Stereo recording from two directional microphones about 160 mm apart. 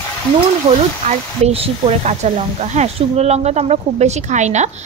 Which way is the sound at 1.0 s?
40° right (ahead or behind).